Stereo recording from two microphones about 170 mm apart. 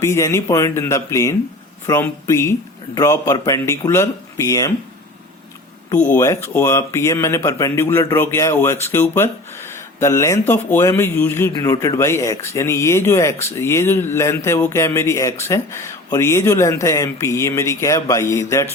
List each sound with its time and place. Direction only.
0.0 s speech: 15° left (ahead or behind)
6.0 s speech: 10° left (ahead or behind)